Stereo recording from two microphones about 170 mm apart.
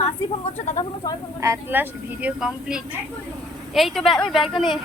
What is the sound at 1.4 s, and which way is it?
A woman's voice, 15° right (ahead or behind).